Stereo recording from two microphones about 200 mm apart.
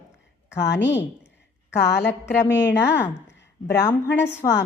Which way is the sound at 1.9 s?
55° left (ahead or behind).